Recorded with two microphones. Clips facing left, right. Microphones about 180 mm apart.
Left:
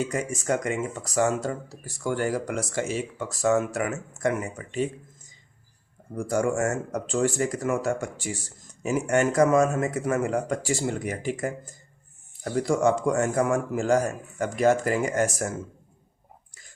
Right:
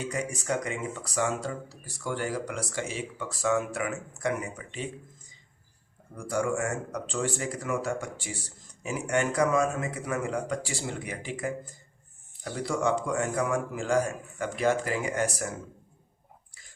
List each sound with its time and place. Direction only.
0.1 s speech: 45° left (ahead or behind)
6.1 s speech: 45° left (ahead or behind)